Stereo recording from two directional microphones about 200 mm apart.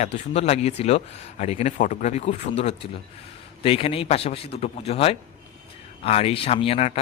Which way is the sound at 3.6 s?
30° left (ahead or behind).